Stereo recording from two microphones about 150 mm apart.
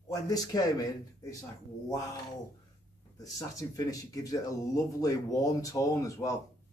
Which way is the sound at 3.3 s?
25° left (ahead or behind).